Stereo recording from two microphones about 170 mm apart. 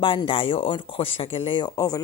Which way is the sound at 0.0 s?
30° left (ahead or behind).